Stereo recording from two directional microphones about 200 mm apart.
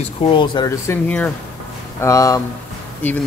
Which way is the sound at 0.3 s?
20° left (ahead or behind).